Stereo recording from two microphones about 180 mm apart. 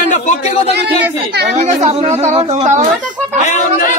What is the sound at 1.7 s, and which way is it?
A woman's voice, 40° right (ahead or behind).